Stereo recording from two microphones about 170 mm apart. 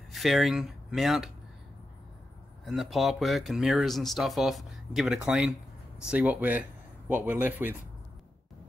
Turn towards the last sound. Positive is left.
turn(degrees=-10)  # may be behind; listen again after turning